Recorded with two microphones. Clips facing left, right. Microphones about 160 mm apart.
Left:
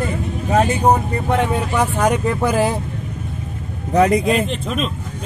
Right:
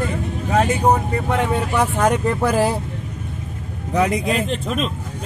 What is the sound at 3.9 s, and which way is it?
Speech, 45° left (ahead or behind).